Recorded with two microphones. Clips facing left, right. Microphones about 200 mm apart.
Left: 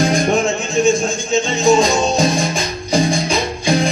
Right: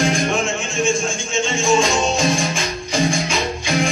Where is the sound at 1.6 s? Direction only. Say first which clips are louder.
Left 4 dB; 35° left (ahead or behind).